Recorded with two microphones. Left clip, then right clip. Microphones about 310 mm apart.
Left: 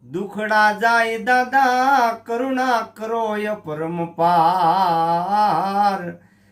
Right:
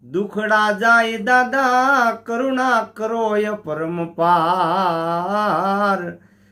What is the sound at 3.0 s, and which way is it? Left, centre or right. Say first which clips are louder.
Speech: right 2 dB; left.